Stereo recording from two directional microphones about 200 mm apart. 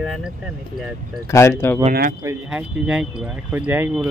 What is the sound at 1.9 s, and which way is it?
Speech, 50° right (ahead or behind).